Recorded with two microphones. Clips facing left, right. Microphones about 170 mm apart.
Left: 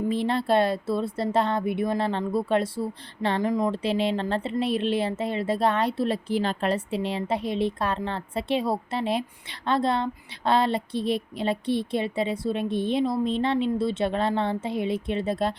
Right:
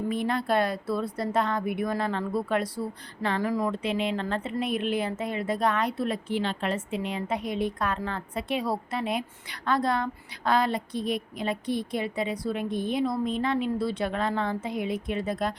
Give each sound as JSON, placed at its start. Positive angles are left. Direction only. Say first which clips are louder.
{"t": 0.1, "sound": "a woman's voice", "louder": "left 3 dB", "side_deg": 30}
{"t": 3.8, "sound": "a woman's voice", "louder": "left 3 dB", "side_deg": 30}